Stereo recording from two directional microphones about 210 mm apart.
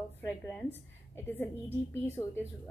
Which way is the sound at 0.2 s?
10° left (ahead or behind).